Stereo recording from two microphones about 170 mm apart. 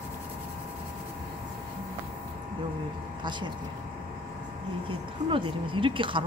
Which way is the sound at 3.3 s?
25° right (ahead or behind).